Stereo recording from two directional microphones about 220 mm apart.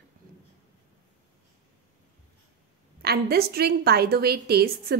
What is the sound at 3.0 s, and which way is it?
A woman's voice, 45° right (ahead or behind).